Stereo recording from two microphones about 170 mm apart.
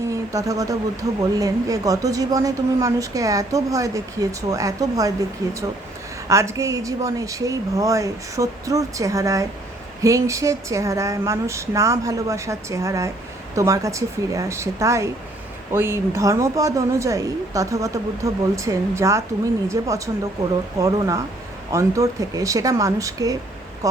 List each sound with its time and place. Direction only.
0.1 s speech: 20° right (ahead or behind)